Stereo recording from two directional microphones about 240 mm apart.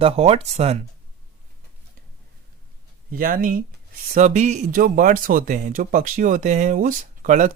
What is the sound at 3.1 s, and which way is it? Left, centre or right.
Speech, right.